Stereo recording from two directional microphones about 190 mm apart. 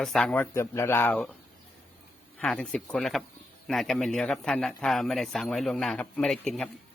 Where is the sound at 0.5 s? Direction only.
15° left (ahead or behind).